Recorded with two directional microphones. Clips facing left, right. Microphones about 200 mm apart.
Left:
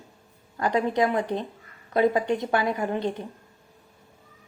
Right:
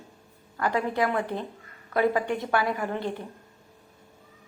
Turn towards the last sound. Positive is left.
turn(degrees=20)  # may be behind; listen again after turning